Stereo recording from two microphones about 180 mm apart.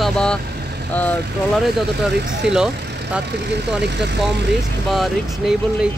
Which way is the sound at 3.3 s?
70° right (ahead or behind).